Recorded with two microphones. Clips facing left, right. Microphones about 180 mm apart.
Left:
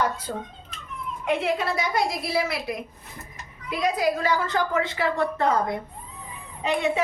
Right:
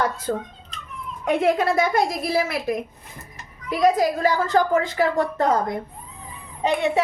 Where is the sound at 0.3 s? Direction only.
65° right (ahead or behind).